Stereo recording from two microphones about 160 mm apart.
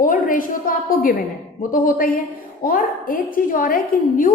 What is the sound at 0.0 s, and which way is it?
A woman's voice, 60° left (ahead or behind).